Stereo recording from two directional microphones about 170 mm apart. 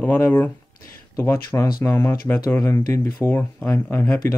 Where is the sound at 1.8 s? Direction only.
15° left (ahead or behind).